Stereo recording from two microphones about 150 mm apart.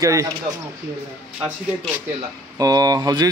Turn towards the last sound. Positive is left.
turn(degrees=-25)  # may be behind; listen again after turning